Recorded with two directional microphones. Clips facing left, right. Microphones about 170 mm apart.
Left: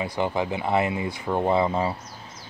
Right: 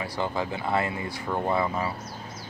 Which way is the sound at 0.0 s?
20° left (ahead or behind).